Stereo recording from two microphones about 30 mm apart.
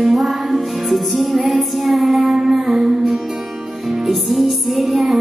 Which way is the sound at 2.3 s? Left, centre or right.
Centre.